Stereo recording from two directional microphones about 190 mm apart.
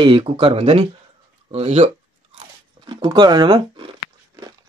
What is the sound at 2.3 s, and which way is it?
Crunch, 25° right (ahead or behind).